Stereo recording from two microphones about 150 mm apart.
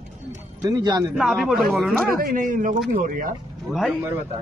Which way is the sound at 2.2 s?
65° right (ahead or behind).